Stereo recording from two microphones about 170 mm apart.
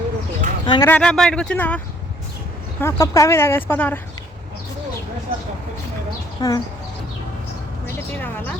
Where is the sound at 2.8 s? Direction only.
20° left (ahead or behind).